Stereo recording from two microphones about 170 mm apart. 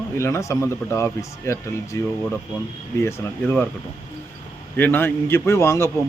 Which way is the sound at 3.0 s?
15° left (ahead or behind).